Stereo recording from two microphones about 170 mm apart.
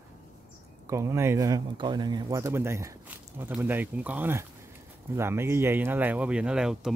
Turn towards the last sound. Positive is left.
turn(degrees=-5)  # may be behind; listen again after turning